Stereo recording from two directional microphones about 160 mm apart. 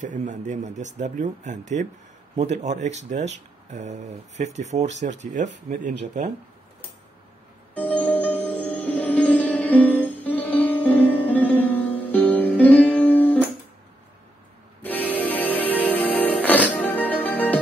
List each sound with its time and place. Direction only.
0.0 s speech: 50° right (ahead or behind)
4.4 s speech: 45° right (ahead or behind)
7.7 s music: 10° left (ahead or behind)
14.8 s music: 10° left (ahead or behind)